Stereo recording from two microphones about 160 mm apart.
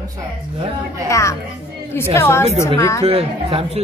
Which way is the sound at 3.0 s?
35° right (ahead or behind).